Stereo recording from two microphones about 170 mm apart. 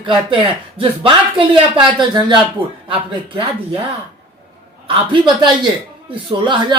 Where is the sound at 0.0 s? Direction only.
30° right (ahead or behind).